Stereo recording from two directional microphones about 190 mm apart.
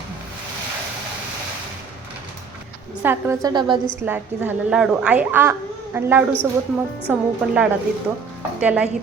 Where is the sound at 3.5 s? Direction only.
25° right (ahead or behind).